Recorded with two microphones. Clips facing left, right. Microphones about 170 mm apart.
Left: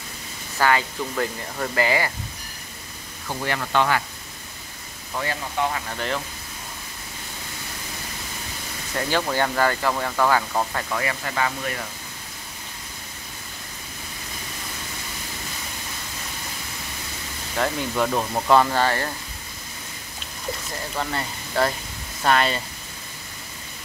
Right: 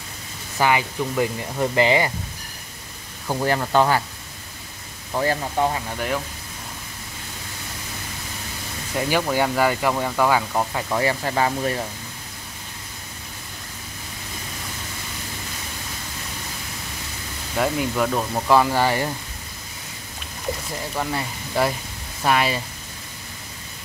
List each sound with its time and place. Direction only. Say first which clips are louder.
0.6 s speech: right 1 dB; 15° right (ahead or behind)
3.3 s speech: right 5 dB; 35° right (ahead or behind)
5.1 s speech: right 5 dB; 35° right (ahead or behind)
5.9 s speech: right 2 dB; 10° right (ahead or behind)
8.9 s speech: right 2 dB; 10° right (ahead or behind)
10.9 s speech: right 5 dB; 30° right (ahead or behind)
17.6 s speech: right 2 dB; 10° right (ahead or behind)
17.9 s speech: right 1 dB; centre (ahead or behind)
20.9 s speech: right 1 dB; 5° right (ahead or behind)